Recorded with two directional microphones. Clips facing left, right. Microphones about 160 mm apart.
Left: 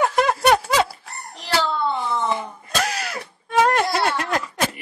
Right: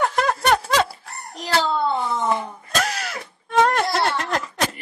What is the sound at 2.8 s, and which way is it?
Music, centre (ahead or behind).